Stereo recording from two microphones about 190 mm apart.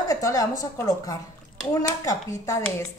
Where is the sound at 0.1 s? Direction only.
15° left (ahead or behind).